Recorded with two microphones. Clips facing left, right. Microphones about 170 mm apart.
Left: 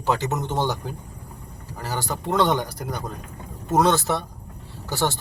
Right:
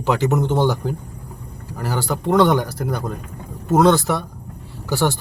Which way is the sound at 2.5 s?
20° left (ahead or behind).